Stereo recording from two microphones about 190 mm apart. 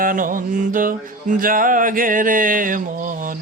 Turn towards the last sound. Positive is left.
turn(degrees=-45)  # may be behind; listen again after turning